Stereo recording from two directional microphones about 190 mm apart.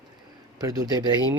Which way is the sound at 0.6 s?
20° right (ahead or behind).